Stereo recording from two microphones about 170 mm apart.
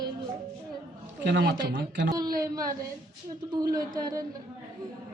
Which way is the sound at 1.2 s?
75° right (ahead or behind).